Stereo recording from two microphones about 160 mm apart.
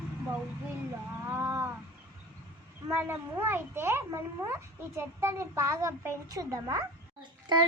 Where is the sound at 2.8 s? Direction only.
15° right (ahead or behind).